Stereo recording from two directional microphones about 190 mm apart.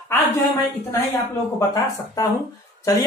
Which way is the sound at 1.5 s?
20° left (ahead or behind).